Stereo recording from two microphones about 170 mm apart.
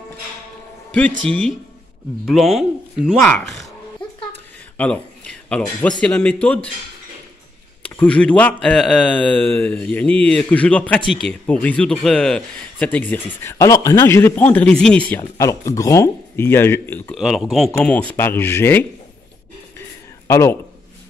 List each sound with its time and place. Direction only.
1.2 s speech: 5° left (ahead or behind)
3.3 s a man's voice: 10° left (ahead or behind)
4.7 s speech: 5° left (ahead or behind)
7.8 s a man's voice: 10° left (ahead or behind)
17.1 s a man's voice: centre (ahead or behind); by 18.9 s 15° left (ahead or behind)
20.2 s speech: 15° left (ahead or behind)